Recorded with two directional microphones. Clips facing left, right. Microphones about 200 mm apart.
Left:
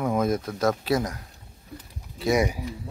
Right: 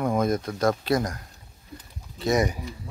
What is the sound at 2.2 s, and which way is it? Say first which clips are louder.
Speech: even; 10° left (ahead or behind).